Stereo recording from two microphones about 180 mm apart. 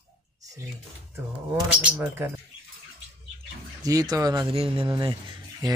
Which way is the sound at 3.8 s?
20° right (ahead or behind).